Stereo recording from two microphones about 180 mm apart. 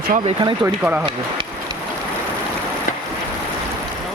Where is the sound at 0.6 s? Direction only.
15° right (ahead or behind).